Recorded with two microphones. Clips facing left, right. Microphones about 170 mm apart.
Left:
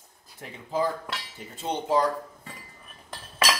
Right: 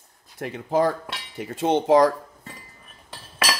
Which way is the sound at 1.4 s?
90° right.